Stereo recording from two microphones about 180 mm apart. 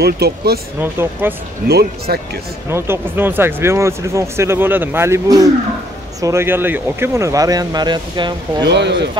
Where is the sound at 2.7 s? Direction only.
10° right (ahead or behind).